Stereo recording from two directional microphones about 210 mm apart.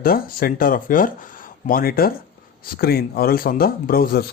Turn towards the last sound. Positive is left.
turn(degrees=45)  # may be behind; listen again after turning